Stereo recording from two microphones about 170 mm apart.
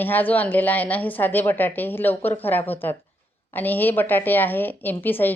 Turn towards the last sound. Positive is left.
turn(degrees=10)  # may be behind; listen again after turning